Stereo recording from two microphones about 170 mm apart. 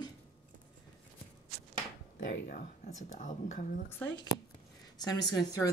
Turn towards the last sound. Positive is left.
turn(degrees=20)  # may be behind; listen again after turning